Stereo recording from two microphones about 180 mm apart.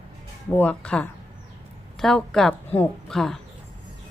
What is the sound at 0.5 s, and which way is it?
A woman's voice, 5° left (ahead or behind).